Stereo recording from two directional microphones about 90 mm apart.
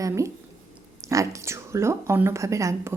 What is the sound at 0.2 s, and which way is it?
A woman's voice, 35° right (ahead or behind).